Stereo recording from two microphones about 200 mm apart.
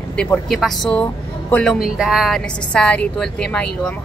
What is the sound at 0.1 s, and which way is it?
Speech, 5° left (ahead or behind).